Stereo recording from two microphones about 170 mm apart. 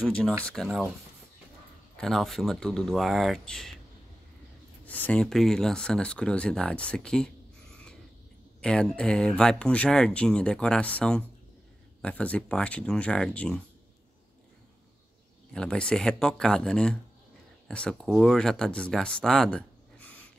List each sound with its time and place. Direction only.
0.0 s speech: 5° left (ahead or behind)
2.0 s speech: centre (ahead or behind)
4.8 s speech: 10° left (ahead or behind)
8.5 s speech: 5° left (ahead or behind)
15.5 s speech: 5° left (ahead or behind)